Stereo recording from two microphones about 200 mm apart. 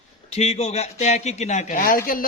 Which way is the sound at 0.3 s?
30° left (ahead or behind).